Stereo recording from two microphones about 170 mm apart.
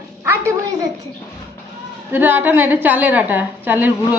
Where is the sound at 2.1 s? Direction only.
10° right (ahead or behind).